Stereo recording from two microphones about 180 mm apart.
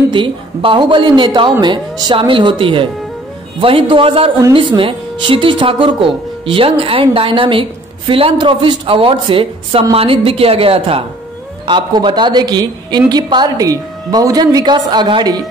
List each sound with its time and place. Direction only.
0.1 s a woman's voice: 30° right (ahead or behind)